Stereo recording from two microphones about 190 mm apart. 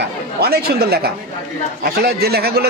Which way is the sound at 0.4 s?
55° right (ahead or behind).